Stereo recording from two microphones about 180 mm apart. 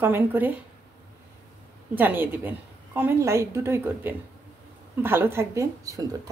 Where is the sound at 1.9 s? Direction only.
10° right (ahead or behind).